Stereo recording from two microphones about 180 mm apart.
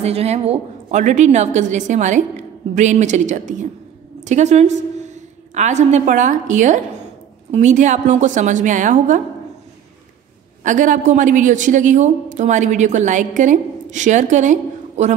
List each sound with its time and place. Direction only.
0.0 s a woman's voice: 35° right (ahead or behind)
10.6 s a woman's voice: 45° right (ahead or behind)